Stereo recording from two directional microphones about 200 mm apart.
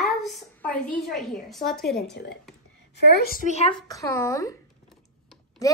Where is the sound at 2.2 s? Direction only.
50° left (ahead or behind).